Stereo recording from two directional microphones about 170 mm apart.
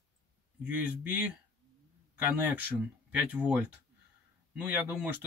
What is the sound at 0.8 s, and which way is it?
Speech, 10° right (ahead or behind).